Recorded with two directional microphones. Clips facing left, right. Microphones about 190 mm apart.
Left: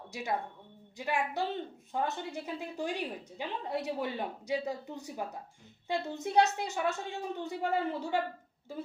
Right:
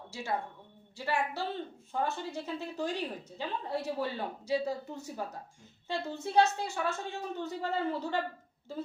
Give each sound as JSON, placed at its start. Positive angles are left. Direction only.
{"t": 0.1, "sound": "a woman's voice", "side_deg": 15}